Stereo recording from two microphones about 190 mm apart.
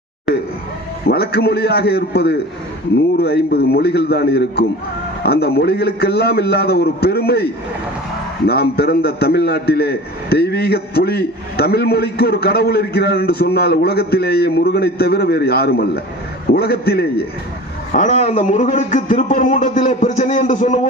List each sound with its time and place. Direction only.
1.0 s a man's voice: 55° left (ahead or behind)
8.4 s a man's voice: 55° left (ahead or behind)
17.9 s a man's voice: 40° left (ahead or behind)